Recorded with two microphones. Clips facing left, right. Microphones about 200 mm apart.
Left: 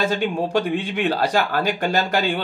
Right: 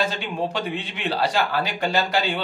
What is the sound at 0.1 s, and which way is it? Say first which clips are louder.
A man's voice: left 6 dB; 45° left (ahead or behind).